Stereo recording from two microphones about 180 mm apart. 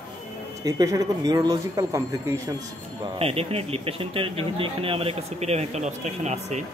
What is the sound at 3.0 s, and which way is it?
A man's voice, 35° right (ahead or behind).